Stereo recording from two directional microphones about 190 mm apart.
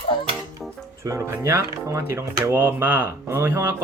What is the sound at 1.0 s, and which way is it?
Speech, 15° right (ahead or behind).